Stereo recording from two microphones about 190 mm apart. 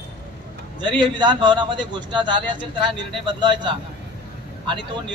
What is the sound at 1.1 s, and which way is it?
A man's voice, 25° right (ahead or behind).